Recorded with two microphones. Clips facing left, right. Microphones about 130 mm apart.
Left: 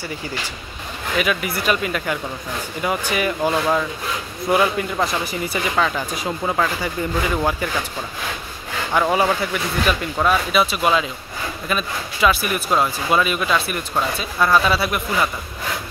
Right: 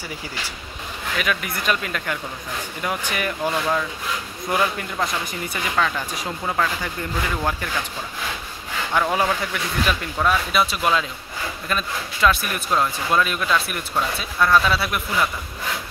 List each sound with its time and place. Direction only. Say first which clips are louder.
1.1 s a man's voice: left 4 dB; 5° left (ahead or behind)
9.1 s speech: left 3 dB; 5° left (ahead or behind)